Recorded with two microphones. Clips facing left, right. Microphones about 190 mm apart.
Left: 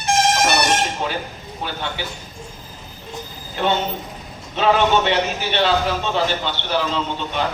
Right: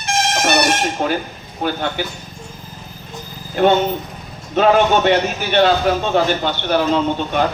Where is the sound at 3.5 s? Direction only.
50° right (ahead or behind).